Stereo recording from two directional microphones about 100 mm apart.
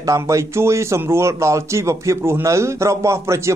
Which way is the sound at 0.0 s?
30° right (ahead or behind).